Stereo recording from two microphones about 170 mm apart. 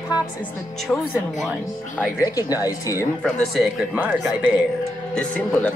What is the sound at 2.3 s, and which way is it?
Speech, 20° left (ahead or behind).